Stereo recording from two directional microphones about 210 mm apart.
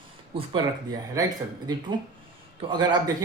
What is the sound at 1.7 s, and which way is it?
Speech, 20° right (ahead or behind).